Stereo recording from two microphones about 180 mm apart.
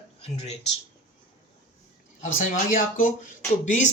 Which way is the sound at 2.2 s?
45° left (ahead or behind).